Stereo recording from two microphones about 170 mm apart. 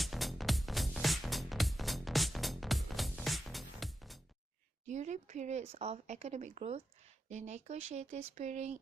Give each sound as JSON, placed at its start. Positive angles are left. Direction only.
{"t": 0.0, "sound": "music", "side_deg": 0}
{"t": 4.9, "sound": "speech", "side_deg": -45}